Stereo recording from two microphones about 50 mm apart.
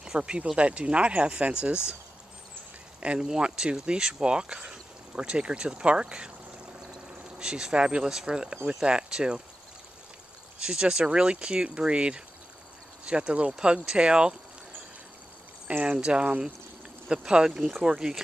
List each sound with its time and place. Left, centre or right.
0.0 s speech: centre
3.0 s speech: right
10.6 s speech: centre
15.8 s speech: right